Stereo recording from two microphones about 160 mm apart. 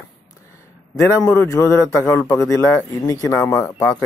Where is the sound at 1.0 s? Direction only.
15° left (ahead or behind).